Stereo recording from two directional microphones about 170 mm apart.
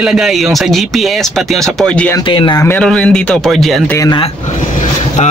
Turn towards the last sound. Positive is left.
turn(degrees=20)  # may be behind; listen again after turning